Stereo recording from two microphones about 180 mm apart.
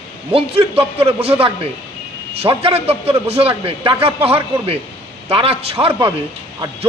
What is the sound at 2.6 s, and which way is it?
A man's voice, 35° right (ahead or behind).